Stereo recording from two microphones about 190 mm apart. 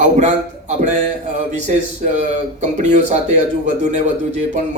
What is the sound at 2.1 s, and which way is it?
Speech, 40° right (ahead or behind).